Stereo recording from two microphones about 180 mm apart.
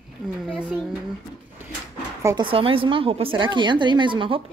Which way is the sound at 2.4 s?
30° right (ahead or behind).